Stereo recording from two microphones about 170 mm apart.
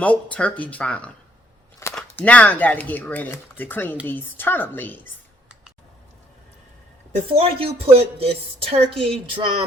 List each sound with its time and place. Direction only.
0.0 s speech: 10° left (ahead or behind)
1.8 s a sound: 15° left (ahead or behind)
2.1 s speech: 10° left (ahead or behind)
7.3 s a woman's voice: 35° right (ahead or behind)